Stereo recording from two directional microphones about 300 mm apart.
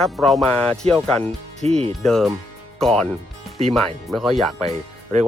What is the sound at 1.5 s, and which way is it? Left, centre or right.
Speech, right.